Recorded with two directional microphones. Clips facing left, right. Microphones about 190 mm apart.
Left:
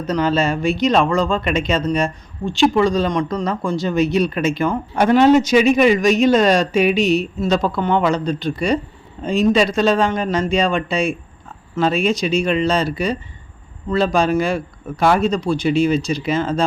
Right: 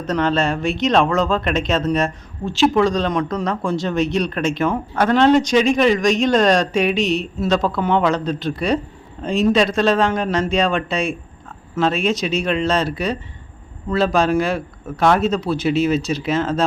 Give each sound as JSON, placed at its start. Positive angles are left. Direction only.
{"t": 0.0, "sound": "speech", "side_deg": 0}
{"t": 4.9, "sound": "speech", "side_deg": 10}